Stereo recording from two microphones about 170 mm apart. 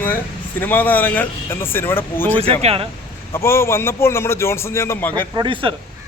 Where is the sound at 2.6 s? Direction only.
35° right (ahead or behind).